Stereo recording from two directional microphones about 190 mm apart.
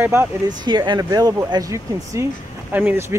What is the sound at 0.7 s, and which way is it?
Speech, 25° right (ahead or behind).